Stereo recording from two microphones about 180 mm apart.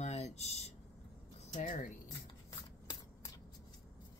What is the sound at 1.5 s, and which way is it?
Speech, 45° left (ahead or behind).